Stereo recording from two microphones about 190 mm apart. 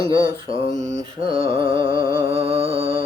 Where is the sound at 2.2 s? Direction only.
30° right (ahead or behind).